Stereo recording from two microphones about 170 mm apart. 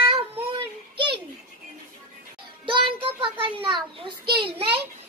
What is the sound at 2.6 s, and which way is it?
A child's voice, 30° right (ahead or behind).